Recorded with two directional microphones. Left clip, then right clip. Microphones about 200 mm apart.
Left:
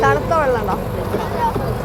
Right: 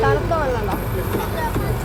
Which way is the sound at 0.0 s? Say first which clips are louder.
Left 4 dB; 15° left (ahead or behind).